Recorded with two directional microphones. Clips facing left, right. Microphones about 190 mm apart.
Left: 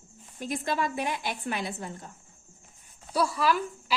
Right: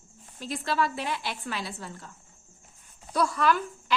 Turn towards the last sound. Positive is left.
turn(degrees=5)  # may be behind; listen again after turning